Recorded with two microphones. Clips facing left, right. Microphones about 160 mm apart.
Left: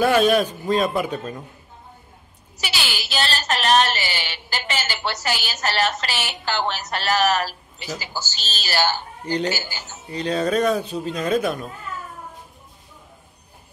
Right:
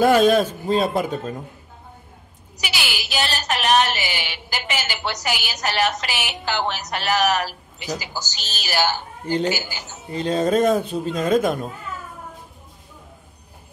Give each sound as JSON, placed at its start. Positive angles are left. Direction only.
{"t": 0.0, "sound": "a man's voice", "side_deg": -40}
{"t": 2.5, "sound": "a woman's voice", "side_deg": -15}
{"t": 10.1, "sound": "a man's voice", "side_deg": -45}